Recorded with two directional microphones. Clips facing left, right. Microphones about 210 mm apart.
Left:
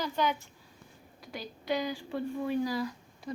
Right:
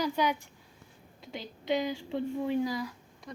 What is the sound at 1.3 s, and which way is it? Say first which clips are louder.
Speech: right 2 dB; 20° right (ahead or behind).